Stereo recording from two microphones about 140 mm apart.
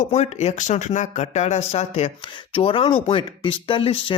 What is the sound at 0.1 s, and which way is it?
Speech, 50° left (ahead or behind).